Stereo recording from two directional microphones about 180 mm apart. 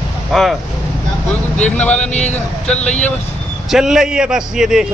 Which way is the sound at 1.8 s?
5° left (ahead or behind).